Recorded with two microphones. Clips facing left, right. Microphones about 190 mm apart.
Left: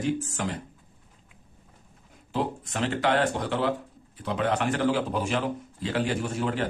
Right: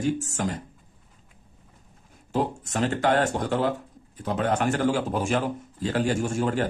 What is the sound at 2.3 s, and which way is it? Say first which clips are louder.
A man's voice: right 3 dB; 45° right (ahead or behind).